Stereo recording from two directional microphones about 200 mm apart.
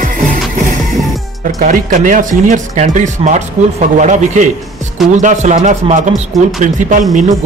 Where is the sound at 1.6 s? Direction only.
40° right (ahead or behind).